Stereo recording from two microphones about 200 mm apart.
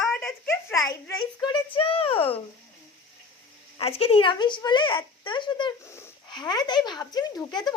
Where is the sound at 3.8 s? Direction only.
30° left (ahead or behind).